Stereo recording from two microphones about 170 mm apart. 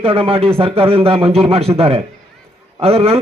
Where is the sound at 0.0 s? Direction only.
20° right (ahead or behind).